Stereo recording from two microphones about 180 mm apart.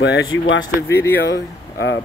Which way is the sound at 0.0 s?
85° left.